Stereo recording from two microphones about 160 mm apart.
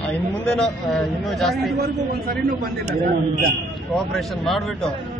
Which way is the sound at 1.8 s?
75° right (ahead or behind).